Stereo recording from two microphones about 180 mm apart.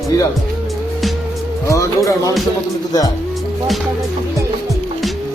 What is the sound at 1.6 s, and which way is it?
Speech, 15° left (ahead or behind).